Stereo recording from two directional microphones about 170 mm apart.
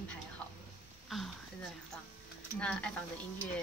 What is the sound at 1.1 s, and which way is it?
A woman's voice, centre (ahead or behind).